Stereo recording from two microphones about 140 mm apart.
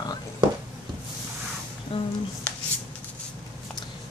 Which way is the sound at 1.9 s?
40° left (ahead or behind).